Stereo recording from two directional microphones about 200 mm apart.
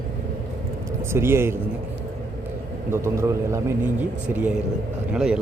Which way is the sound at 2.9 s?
15° right (ahead or behind).